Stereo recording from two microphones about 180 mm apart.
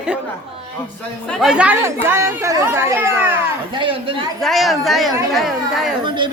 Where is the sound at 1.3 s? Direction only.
Centre (ahead or behind).